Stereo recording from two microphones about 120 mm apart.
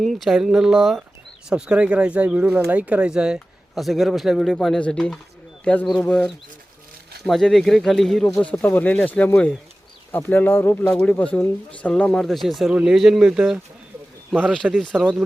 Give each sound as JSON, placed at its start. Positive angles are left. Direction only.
{"t": 0.0, "sound": "speech", "side_deg": 0}
{"t": 14.6, "sound": "speech", "side_deg": -10}